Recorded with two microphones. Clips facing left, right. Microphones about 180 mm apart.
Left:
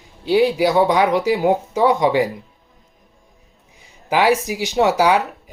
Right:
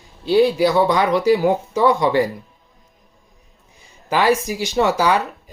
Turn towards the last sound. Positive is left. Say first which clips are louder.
# left 2 dB
turn(degrees=15)  # may be behind; listen again after turning